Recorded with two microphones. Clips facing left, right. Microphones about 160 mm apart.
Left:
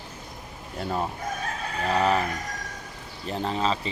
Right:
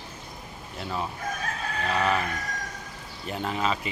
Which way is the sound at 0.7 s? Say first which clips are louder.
Left 4 dB; 40° left (ahead or behind).